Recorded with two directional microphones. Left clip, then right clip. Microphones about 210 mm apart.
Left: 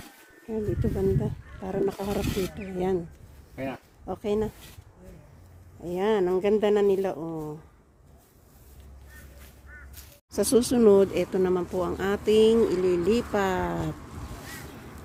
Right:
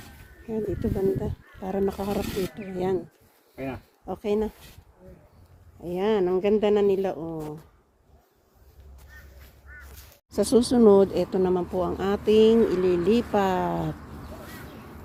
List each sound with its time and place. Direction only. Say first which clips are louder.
0.4 s speech: right 1 dB; 5° right (ahead or behind)
3.5 s speech: even; 20° left (ahead or behind)
4.0 s speech: right 1 dB; 5° right (ahead or behind)
5.8 s speech: right 1 dB; centre (ahead or behind)
9.7 s quack: right 2 dB; 50° right (ahead or behind)
10.3 s speech: right 2 dB; centre (ahead or behind)